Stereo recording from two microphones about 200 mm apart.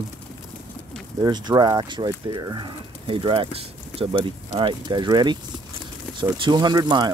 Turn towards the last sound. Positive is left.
turn(degrees=-20)  # may be behind; listen again after turning